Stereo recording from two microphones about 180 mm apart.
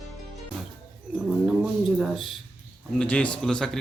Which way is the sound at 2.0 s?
Centre (ahead or behind).